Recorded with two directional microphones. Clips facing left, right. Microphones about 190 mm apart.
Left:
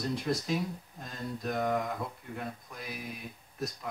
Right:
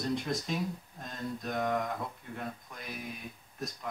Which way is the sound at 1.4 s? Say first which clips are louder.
Left 2 dB; centre (ahead or behind).